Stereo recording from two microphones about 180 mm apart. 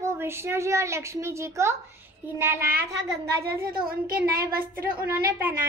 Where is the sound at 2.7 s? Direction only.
70° right (ahead or behind).